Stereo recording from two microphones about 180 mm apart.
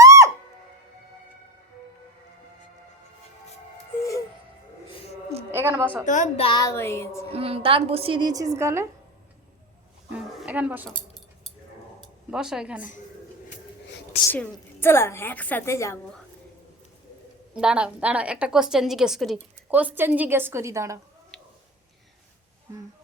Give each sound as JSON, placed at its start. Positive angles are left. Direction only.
{"t": 0.0, "sound": "music", "side_deg": -20}
{"t": 5.5, "sound": "a woman's voice", "side_deg": -10}
{"t": 6.1, "sound": "speech", "side_deg": 40}
{"t": 6.6, "sound": "a woman's voice", "side_deg": 15}
{"t": 7.3, "sound": "a woman's voice", "side_deg": -30}
{"t": 10.1, "sound": "a sound", "side_deg": -5}
{"t": 12.3, "sound": "speech", "side_deg": -5}
{"t": 14.3, "sound": "a woman's voice", "side_deg": 15}
{"t": 17.5, "sound": "a woman's voice", "side_deg": -5}